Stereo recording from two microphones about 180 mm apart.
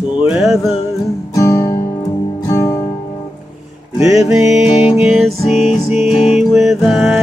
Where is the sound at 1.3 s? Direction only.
15° left (ahead or behind).